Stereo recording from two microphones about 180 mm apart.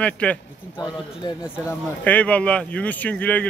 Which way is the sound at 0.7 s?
25° left (ahead or behind).